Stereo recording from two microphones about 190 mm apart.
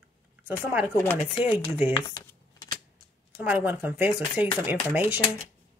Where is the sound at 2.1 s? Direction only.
25° left (ahead or behind).